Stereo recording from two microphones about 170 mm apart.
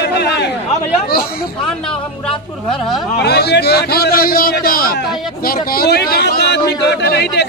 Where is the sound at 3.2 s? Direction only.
75° left (ahead or behind).